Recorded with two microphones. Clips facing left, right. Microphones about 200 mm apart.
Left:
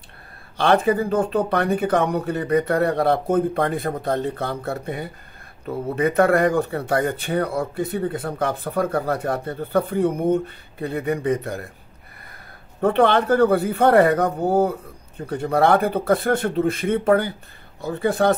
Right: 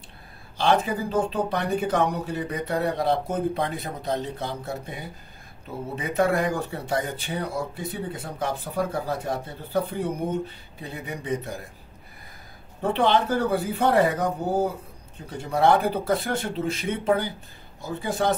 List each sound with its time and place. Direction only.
0.6 s speech: 60° left (ahead or behind)
12.8 s speech: 60° left (ahead or behind)